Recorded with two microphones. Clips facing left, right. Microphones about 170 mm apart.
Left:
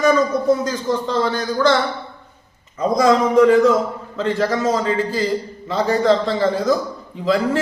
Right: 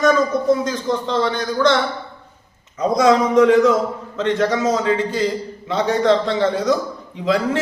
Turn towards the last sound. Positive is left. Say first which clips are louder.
# left 1 dB
turn(degrees=0)  # may be behind; listen again after turning